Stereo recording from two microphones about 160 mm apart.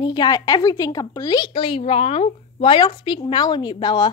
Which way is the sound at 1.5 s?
35° left (ahead or behind).